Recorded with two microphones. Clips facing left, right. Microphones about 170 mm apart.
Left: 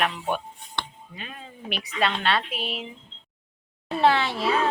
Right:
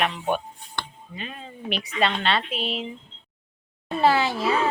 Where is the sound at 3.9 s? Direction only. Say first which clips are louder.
Right 1 dB; centre (ahead or behind).